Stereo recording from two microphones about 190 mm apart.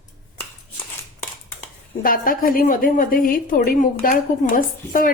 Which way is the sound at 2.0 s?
50° left (ahead or behind).